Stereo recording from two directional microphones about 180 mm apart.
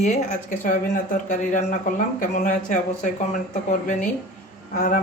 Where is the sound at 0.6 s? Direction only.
50° left (ahead or behind).